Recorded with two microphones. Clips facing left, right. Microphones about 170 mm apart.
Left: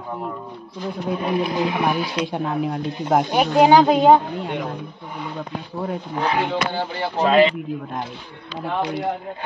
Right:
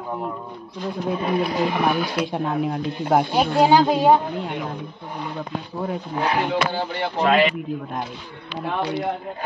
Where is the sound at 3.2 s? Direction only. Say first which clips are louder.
Left 5 dB; 15° left (ahead or behind).